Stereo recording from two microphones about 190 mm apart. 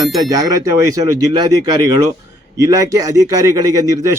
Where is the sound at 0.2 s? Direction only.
20° right (ahead or behind).